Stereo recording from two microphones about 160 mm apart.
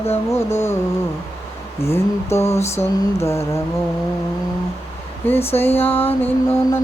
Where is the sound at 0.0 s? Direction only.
15° left (ahead or behind).